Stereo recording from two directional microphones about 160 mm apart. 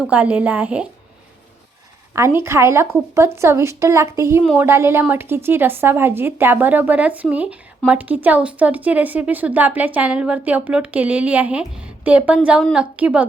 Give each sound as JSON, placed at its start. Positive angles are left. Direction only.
{"t": 0.0, "sound": "a woman's voice", "side_deg": -10}
{"t": 2.1, "sound": "a woman's voice", "side_deg": -15}